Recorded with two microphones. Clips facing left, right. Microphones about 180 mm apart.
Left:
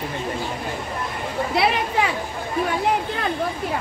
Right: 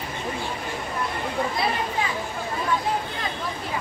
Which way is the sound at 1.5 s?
75° left (ahead or behind).